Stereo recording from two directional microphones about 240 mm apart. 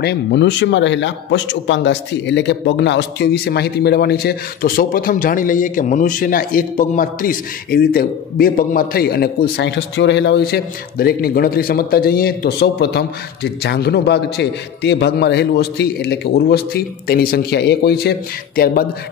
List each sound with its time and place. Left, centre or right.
0.0 s speech: left